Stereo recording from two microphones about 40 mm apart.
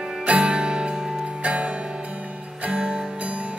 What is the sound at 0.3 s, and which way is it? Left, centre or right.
Music, right.